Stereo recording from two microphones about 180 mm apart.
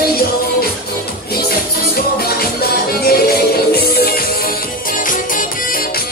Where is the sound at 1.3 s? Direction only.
60° left (ahead or behind).